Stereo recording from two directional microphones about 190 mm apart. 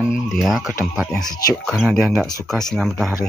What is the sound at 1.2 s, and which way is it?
Speech, 20° left (ahead or behind).